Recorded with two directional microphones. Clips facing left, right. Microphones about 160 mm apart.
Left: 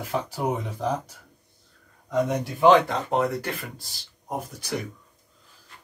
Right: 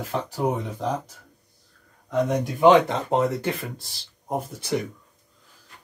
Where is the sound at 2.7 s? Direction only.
25° right (ahead or behind).